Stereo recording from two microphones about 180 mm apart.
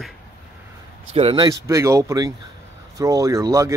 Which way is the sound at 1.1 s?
25° right (ahead or behind).